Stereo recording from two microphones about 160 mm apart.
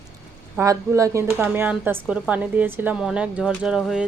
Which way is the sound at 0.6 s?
20° right (ahead or behind).